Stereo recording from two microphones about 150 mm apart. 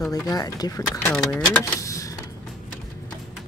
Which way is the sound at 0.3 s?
25° left (ahead or behind).